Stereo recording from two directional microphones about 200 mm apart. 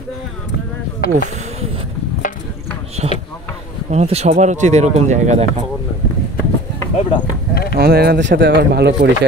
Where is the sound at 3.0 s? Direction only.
35° right (ahead or behind).